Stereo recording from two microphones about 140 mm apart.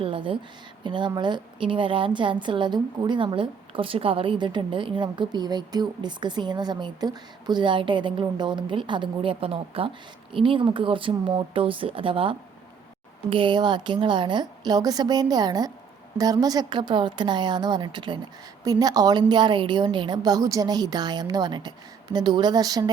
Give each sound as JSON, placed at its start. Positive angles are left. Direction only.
{"t": 0.0, "sound": "a woman's voice", "side_deg": -40}